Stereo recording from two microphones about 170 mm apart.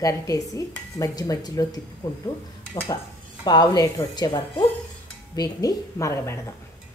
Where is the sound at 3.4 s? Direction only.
25° left (ahead or behind).